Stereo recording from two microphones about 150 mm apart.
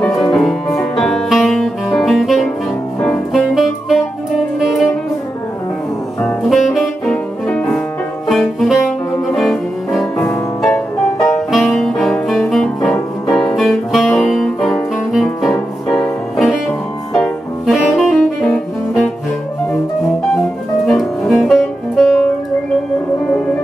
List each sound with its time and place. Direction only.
0.2 s music: centre (ahead or behind)
6.2 s saxophone: centre (ahead or behind)
8.3 s music: centre (ahead or behind)
11.3 s music: centre (ahead or behind)
17.1 s saxophone: centre (ahead or behind)
20.3 s music: centre (ahead or behind)
23.2 s music: 5° left (ahead or behind)